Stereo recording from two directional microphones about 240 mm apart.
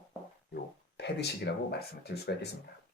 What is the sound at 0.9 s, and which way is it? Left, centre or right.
Speech, left.